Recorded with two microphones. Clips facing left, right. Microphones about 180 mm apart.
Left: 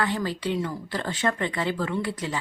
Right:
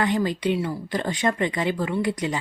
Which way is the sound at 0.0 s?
20° right (ahead or behind).